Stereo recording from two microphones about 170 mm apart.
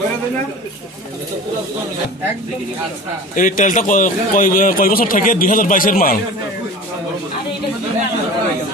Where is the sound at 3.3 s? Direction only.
50° left (ahead or behind).